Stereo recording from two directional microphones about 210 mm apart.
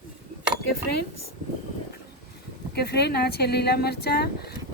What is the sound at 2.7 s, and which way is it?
Speech, 50° left (ahead or behind).